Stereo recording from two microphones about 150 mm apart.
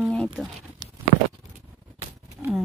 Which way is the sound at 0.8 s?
25° right (ahead or behind).